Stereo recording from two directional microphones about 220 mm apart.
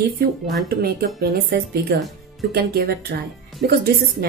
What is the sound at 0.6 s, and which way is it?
Speech, 45° right (ahead or behind).